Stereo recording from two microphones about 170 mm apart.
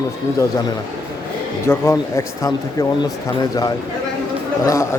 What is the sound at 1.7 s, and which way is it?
Speech, 15° left (ahead or behind).